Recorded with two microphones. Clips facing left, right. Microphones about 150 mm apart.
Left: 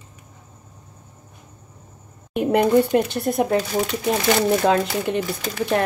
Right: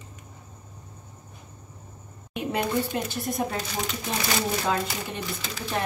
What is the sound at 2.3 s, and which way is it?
Speech, 55° left (ahead or behind).